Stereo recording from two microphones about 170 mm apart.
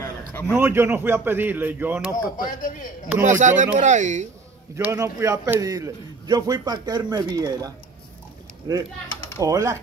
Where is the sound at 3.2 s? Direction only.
45° right (ahead or behind).